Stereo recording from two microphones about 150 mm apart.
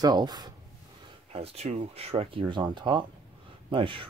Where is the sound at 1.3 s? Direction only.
40° right (ahead or behind).